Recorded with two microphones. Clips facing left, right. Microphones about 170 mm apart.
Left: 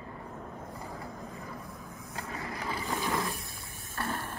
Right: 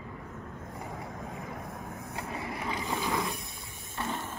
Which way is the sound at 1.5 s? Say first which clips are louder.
Right 4 dB; 55° right (ahead or behind).